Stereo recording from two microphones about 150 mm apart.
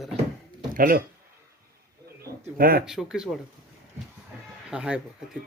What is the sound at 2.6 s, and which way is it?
Speech, 75° right (ahead or behind).